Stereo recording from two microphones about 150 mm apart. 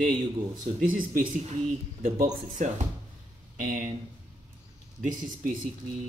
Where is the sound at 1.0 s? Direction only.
60° right (ahead or behind).